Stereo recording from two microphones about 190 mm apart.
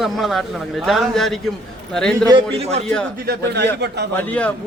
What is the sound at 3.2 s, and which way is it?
Speech, 60° right (ahead or behind).